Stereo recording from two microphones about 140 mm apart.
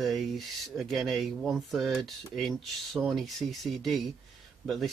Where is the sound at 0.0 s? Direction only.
Centre (ahead or behind).